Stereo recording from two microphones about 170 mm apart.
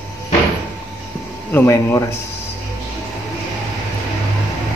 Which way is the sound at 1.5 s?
15° left (ahead or behind).